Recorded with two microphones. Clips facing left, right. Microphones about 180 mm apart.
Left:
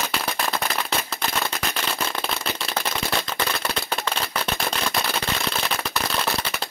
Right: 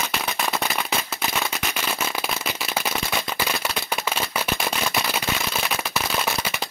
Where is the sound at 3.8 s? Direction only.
5° right (ahead or behind).